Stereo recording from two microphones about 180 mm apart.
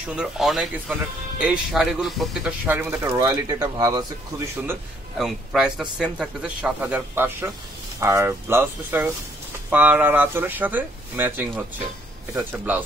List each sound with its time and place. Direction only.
0.1 s a man's voice: 5° right (ahead or behind)
3.1 s speech: 20° right (ahead or behind)
5.1 s a man's voice: centre (ahead or behind)